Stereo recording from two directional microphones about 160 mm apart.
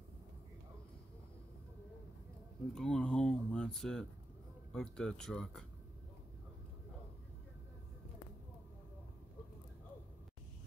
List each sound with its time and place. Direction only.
2.7 s speech: 5° left (ahead or behind)